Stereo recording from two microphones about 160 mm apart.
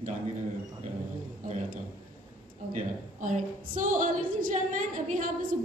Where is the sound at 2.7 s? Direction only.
50° right (ahead or behind).